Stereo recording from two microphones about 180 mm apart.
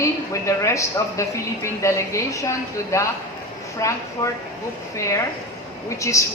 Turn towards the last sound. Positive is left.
turn(degrees=15)  # may be behind; listen again after turning